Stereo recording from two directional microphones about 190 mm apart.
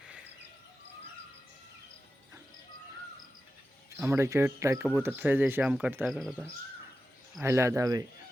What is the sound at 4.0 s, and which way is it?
Speech, 15° right (ahead or behind).